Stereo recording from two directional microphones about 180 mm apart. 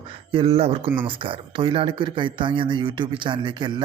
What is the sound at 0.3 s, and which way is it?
Speech, 30° right (ahead or behind).